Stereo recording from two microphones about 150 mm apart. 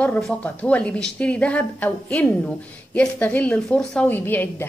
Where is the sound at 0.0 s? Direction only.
5° left (ahead or behind).